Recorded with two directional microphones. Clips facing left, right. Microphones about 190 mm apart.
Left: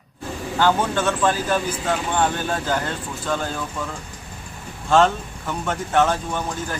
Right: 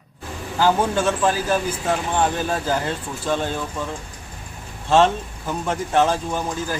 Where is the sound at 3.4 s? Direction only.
25° right (ahead or behind).